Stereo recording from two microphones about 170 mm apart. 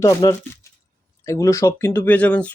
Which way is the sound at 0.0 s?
20° left (ahead or behind).